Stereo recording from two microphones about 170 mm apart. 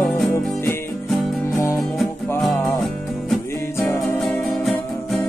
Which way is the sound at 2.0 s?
Centre (ahead or behind).